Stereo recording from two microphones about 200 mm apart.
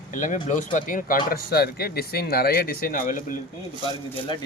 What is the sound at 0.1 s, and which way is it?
Speech, 40° left (ahead or behind).